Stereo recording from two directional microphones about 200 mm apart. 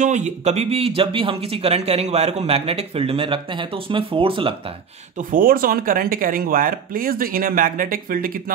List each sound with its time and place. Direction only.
0.0 s speech: 35° right (ahead or behind)
5.3 s speech: 45° right (ahead or behind)